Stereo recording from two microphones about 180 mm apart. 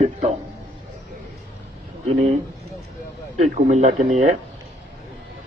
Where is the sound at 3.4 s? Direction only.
40° right (ahead or behind).